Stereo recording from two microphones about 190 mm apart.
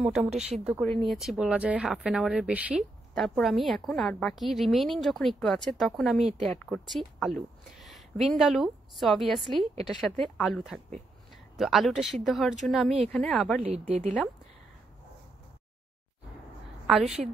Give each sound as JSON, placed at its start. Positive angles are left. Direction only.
{"t": 0.0, "sound": "speech", "side_deg": -5}
{"t": 13.6, "sound": "a woman's voice", "side_deg": -30}
{"t": 16.8, "sound": "a woman's voice", "side_deg": -5}